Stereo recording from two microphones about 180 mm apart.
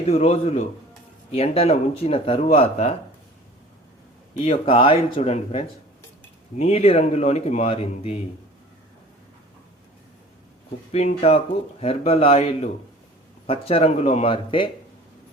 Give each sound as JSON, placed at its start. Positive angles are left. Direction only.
{"t": 0.0, "sound": "speech", "side_deg": 35}
{"t": 4.4, "sound": "speech", "side_deg": 30}
{"t": 10.9, "sound": "speech", "side_deg": 35}